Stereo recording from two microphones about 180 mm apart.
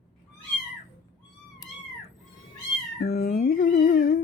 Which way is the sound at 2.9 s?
55° left (ahead or behind).